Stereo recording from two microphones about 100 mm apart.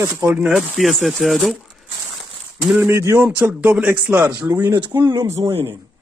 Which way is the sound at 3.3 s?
15° right (ahead or behind).